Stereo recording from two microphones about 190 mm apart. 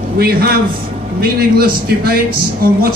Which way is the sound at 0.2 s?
55° right (ahead or behind).